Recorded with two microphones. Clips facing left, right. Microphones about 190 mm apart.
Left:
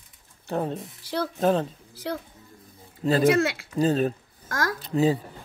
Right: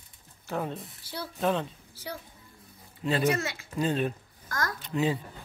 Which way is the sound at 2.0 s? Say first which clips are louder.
Left 8 dB; 80° left.